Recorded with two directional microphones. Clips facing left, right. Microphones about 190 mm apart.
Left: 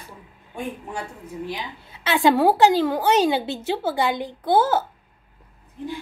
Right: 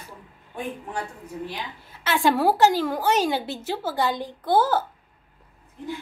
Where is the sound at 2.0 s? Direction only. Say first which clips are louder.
Left 3 dB; 20° left (ahead or behind).